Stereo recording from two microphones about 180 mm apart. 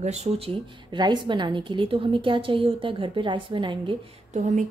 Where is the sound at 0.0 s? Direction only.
40° right (ahead or behind).